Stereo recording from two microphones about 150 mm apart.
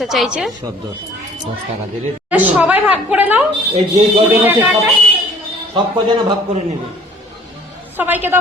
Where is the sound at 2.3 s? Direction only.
10° right (ahead or behind).